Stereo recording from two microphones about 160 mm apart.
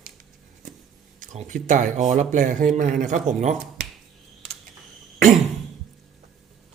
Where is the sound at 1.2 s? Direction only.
50° right (ahead or behind).